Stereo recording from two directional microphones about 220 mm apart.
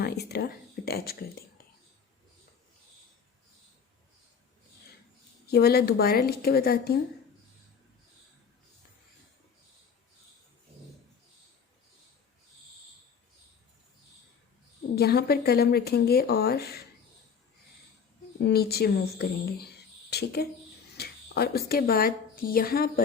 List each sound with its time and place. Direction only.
0.0 s speech: 45° left (ahead or behind)
5.5 s speech: 45° left (ahead or behind)
14.9 s speech: 45° left (ahead or behind)
18.3 s speech: 45° left (ahead or behind)